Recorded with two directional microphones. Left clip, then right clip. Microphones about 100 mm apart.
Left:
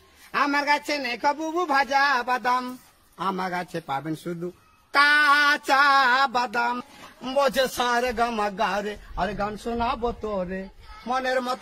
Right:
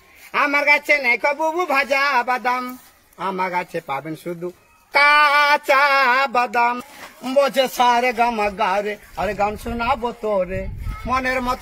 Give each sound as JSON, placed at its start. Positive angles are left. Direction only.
{"t": 0.3, "sound": "a man's voice", "side_deg": 25}
{"t": 6.8, "sound": "a man's voice", "side_deg": 35}